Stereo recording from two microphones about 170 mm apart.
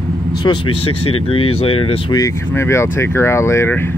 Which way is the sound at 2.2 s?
15° left (ahead or behind).